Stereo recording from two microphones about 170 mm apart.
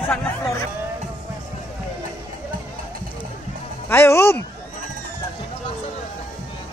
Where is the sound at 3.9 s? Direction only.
15° left (ahead or behind).